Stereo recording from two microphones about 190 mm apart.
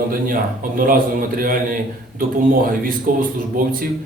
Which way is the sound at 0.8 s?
50° right (ahead or behind).